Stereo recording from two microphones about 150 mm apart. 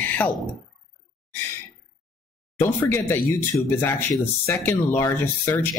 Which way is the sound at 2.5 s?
15° left (ahead or behind).